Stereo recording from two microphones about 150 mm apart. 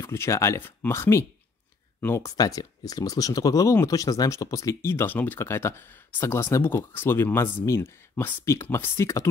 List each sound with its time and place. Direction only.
0.0 s speech: 20° left (ahead or behind)